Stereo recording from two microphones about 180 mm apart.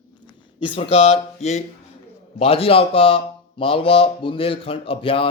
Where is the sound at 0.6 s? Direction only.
30° left (ahead or behind).